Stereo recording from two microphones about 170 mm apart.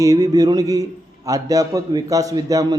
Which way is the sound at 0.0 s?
20° right (ahead or behind).